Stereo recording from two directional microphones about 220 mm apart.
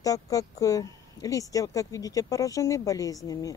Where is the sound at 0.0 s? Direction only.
15° left (ahead or behind).